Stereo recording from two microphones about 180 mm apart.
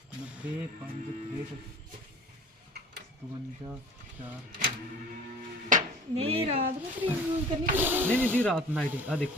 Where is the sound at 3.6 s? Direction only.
30° right (ahead or behind).